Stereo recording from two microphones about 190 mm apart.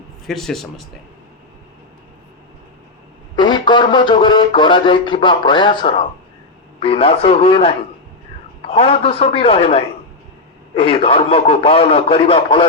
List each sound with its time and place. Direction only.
0.3 s speech: centre (ahead or behind)
3.3 s speech: 25° left (ahead or behind)